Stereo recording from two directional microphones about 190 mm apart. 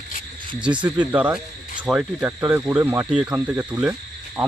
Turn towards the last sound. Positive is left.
turn(degrees=-5)  # may be behind; listen again after turning